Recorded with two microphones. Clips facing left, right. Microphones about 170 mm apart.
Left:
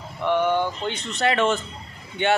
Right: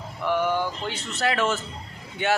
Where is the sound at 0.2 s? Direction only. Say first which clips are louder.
Left 3 dB; 5° right (ahead or behind).